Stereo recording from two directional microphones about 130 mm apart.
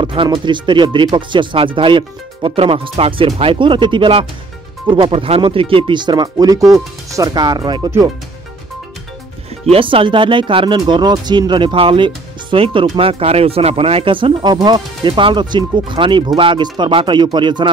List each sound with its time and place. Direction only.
0.0 s speech: 40° right (ahead or behind)
9.7 s speech: 45° right (ahead or behind)